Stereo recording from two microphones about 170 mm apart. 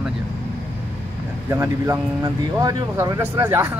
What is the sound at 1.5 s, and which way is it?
Speech, 20° right (ahead or behind).